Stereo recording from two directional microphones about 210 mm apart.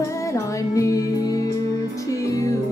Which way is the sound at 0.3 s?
15° left (ahead or behind).